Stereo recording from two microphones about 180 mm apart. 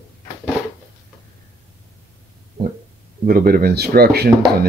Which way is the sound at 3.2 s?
55° right (ahead or behind).